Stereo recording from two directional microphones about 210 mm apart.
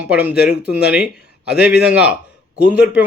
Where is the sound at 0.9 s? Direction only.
5° right (ahead or behind).